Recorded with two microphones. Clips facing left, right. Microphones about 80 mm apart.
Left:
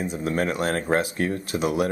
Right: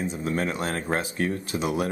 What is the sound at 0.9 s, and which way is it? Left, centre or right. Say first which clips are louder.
Speech: left 3 dB; centre.